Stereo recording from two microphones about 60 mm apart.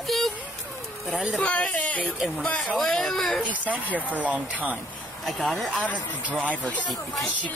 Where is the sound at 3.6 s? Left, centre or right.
Right.